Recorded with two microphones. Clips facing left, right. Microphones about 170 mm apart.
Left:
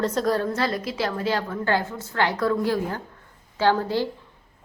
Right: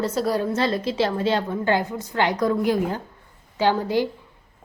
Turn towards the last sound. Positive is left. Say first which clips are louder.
# right 1 dB
turn(degrees=-15)  # may be behind; listen again after turning